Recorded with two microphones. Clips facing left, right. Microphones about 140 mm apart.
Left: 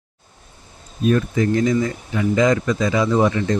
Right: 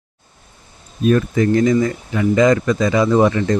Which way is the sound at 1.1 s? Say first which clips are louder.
Right 4 dB; 60° right (ahead or behind).